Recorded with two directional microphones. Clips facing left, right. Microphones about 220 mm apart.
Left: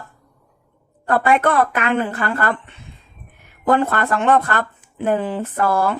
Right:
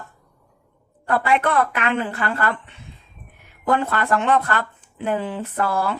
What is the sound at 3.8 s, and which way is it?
Speech, 50° left (ahead or behind).